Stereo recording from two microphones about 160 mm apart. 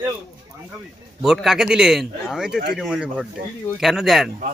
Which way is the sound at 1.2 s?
Centre (ahead or behind).